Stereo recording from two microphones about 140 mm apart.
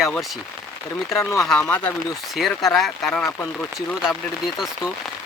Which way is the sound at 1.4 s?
5° left (ahead or behind).